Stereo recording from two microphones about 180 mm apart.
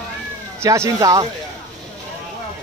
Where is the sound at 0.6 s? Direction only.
15° right (ahead or behind).